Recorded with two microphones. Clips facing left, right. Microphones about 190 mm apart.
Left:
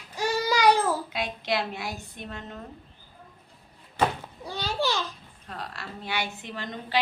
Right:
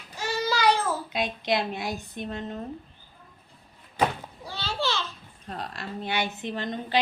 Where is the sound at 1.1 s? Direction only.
20° right (ahead or behind).